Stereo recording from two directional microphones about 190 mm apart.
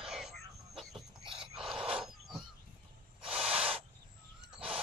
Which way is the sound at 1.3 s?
5° right (ahead or behind).